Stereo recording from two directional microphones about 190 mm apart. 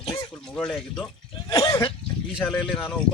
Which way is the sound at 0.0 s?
25° left (ahead or behind).